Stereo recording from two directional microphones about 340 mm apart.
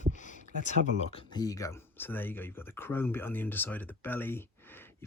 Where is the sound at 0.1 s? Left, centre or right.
Left.